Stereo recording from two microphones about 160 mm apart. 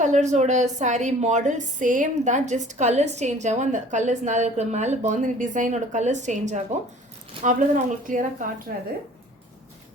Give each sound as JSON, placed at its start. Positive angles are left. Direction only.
{"t": 0.0, "sound": "a woman's voice", "side_deg": -50}